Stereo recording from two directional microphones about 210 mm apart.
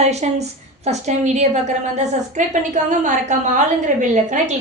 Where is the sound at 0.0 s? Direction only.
30° right (ahead or behind).